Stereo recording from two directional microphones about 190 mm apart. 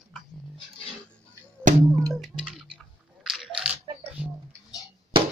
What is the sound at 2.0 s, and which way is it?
Chewing, centre (ahead or behind).